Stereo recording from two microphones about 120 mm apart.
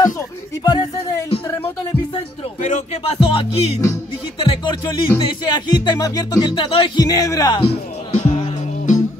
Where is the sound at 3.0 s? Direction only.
50° left (ahead or behind).